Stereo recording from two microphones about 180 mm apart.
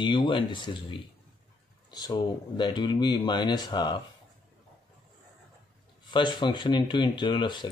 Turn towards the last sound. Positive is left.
turn(degrees=25)  # may be behind; listen again after turning